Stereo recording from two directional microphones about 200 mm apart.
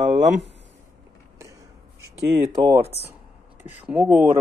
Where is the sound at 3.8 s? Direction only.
5° right (ahead or behind).